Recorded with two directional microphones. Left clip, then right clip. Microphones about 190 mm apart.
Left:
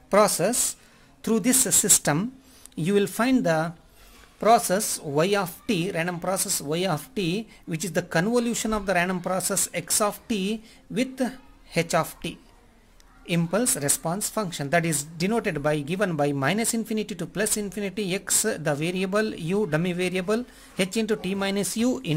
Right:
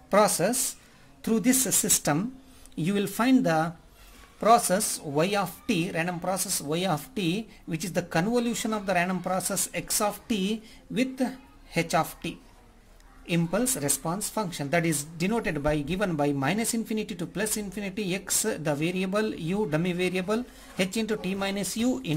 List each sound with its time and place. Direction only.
0.4 s speech: 15° left (ahead or behind)